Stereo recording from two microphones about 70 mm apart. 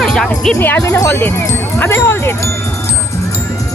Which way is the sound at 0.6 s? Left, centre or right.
Left.